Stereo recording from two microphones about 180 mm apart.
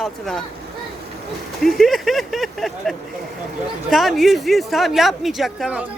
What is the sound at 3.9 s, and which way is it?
Speech, centre (ahead or behind).